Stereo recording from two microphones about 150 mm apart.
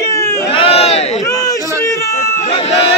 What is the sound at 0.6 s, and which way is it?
Crowd, 40° left (ahead or behind).